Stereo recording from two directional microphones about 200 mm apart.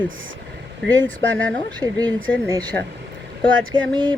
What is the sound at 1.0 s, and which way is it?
Speech, 10° left (ahead or behind).